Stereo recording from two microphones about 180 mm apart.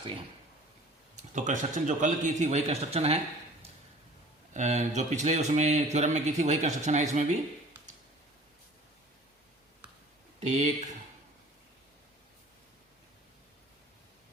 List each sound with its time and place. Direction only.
1.1 s a man's voice: 40° right (ahead or behind)
4.5 s a man's voice: 40° right (ahead or behind)
7.9 s a sound: 40° right (ahead or behind)
10.4 s a man's voice: 40° right (ahead or behind)